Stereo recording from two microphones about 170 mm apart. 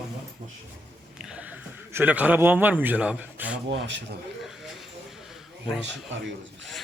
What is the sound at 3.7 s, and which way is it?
Speech, 90° right.